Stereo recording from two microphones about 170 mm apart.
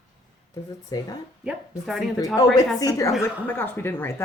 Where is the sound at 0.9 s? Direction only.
20° left (ahead or behind).